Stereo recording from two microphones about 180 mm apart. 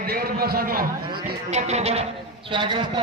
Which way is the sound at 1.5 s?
35° right (ahead or behind).